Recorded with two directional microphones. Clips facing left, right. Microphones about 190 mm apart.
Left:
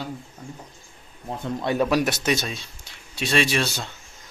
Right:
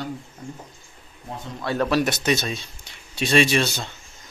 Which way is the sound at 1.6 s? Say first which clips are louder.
Even; 15° left (ahead or behind).